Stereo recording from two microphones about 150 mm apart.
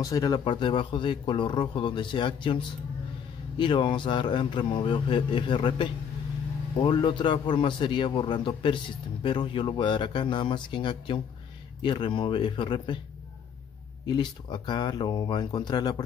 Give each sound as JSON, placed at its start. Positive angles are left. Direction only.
{"t": 0.0, "sound": "a man's voice", "side_deg": 25}
{"t": 14.0, "sound": "speech", "side_deg": 30}